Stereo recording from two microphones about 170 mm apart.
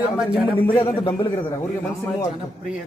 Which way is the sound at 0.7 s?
30° left (ahead or behind).